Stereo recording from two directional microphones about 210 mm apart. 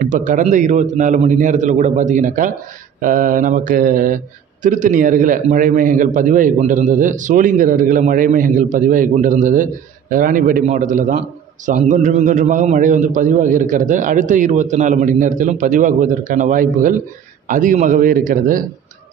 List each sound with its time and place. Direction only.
0.0 s a man's voice: 35° right (ahead or behind)